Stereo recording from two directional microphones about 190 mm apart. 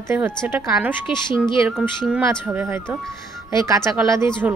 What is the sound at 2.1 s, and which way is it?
Speech, 5° right (ahead or behind).